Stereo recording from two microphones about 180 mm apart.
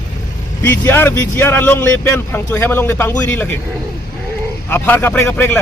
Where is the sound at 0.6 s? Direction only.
10° left (ahead or behind).